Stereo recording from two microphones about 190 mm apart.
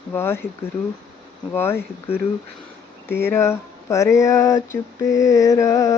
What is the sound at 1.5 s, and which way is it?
Speech, 10° left (ahead or behind).